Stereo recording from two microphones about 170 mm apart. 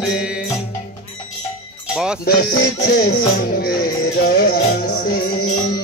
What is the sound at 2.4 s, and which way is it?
Music, 70° left (ahead or behind).